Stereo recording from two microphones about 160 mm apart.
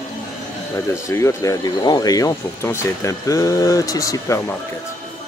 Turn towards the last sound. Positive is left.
turn(degrees=20)  # may be behind; listen again after turning